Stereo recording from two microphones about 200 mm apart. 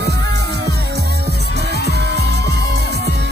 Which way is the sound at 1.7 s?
55° right (ahead or behind).